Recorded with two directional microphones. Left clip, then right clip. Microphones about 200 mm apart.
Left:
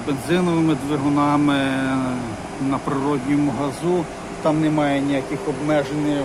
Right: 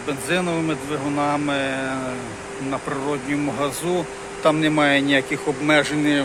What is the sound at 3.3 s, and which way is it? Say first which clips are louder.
Speech: left 2 dB; 5° right (ahead or behind).